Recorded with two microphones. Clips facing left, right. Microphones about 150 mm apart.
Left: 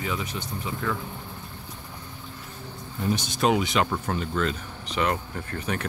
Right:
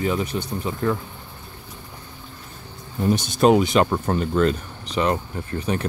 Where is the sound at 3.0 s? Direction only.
45° right (ahead or behind).